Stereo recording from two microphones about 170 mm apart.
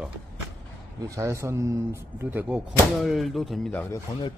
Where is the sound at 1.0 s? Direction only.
20° right (ahead or behind); by 3.8 s 5° left (ahead or behind).